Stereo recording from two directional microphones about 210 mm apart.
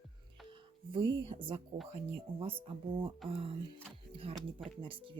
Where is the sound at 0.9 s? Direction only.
25° right (ahead or behind).